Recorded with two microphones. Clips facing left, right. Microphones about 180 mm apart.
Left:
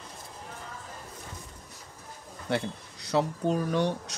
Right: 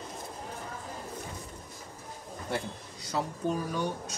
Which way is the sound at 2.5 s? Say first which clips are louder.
Left 5 dB; 70° left (ahead or behind).